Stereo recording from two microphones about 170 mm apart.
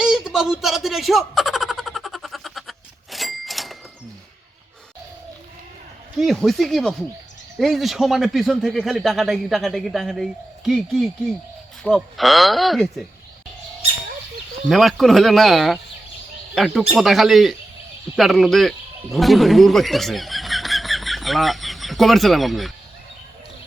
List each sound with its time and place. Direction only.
0.0 s a sound: centre (ahead or behind)
6.1 s a man's voice: centre (ahead or behind)
14.7 s a man's voice: centre (ahead or behind)